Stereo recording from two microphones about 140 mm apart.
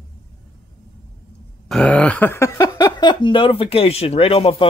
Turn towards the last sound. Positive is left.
turn(degrees=45)  # may be behind; listen again after turning